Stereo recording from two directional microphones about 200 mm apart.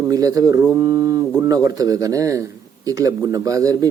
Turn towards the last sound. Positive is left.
turn(degrees=-15)  # may be behind; listen again after turning